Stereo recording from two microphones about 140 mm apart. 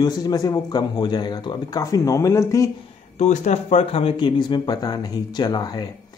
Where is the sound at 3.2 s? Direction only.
55° left (ahead or behind); by 5.8 s 30° left (ahead or behind).